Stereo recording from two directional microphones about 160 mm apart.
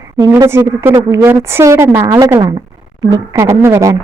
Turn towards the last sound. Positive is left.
turn(degrees=-20)  # may be behind; listen again after turning